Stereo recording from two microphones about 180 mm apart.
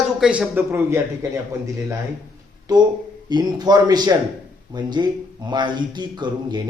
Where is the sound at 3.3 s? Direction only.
25° right (ahead or behind).